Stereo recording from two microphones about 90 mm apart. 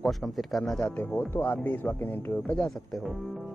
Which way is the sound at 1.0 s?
20° left (ahead or behind).